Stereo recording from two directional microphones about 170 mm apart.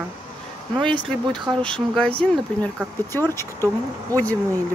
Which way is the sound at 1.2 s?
25° right (ahead or behind).